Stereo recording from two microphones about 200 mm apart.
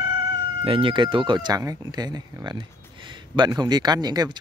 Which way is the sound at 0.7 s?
25° right (ahead or behind).